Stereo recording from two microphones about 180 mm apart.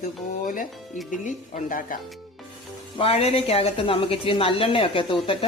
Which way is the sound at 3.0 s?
35° left (ahead or behind).